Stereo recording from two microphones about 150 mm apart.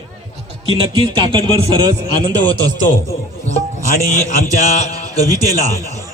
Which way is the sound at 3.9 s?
55° left (ahead or behind).